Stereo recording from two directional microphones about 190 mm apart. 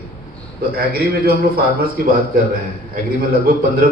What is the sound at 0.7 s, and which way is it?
A man's voice, 50° right (ahead or behind).